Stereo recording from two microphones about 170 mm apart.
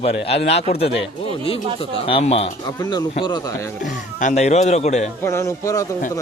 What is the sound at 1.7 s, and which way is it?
Speech, 35° left (ahead or behind).